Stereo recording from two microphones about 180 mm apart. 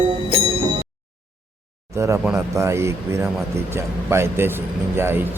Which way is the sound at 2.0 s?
15° right (ahead or behind).